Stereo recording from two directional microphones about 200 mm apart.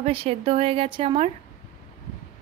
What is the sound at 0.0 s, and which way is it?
A woman's voice, 30° right (ahead or behind).